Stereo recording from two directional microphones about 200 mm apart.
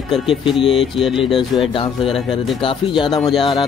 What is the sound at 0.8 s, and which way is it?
Speech, centre (ahead or behind).